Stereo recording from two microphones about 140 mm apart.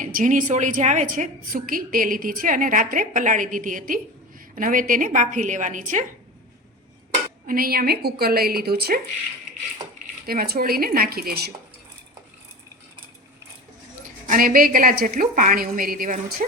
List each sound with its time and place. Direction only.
0.0 s a woman's voice: 70° right (ahead or behind)
7.4 s a woman's voice: 90° right
10.2 s a woman's voice: 90° right
14.3 s a woman's voice: 80° right